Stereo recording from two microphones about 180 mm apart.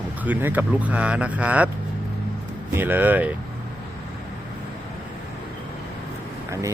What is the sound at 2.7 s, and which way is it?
Speech, 10° right (ahead or behind).